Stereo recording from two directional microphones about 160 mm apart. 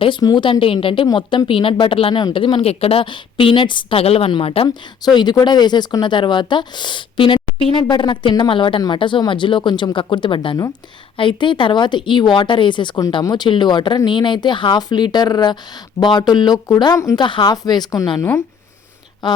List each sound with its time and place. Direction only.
0.0 s a woman's voice: 25° left (ahead or behind)